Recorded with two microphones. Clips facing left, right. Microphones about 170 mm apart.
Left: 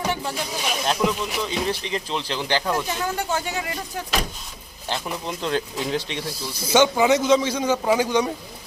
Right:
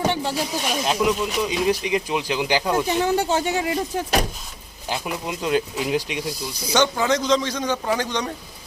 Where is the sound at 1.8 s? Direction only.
15° right (ahead or behind).